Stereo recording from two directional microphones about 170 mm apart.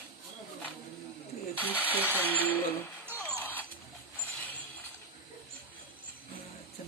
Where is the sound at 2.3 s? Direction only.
10° left (ahead or behind).